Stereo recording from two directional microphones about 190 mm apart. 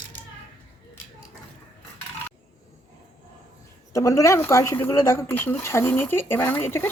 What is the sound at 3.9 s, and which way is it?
Speech, 15° left (ahead or behind).